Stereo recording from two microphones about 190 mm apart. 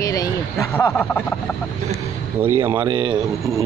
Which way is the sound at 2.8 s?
25° right (ahead or behind).